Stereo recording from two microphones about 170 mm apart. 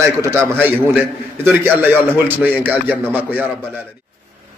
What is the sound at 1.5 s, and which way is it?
A man's voice, 15° right (ahead or behind).